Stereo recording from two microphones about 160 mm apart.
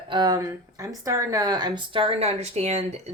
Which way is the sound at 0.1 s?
25° right (ahead or behind).